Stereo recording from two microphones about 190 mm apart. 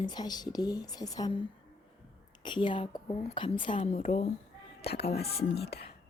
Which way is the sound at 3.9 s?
40° left (ahead or behind).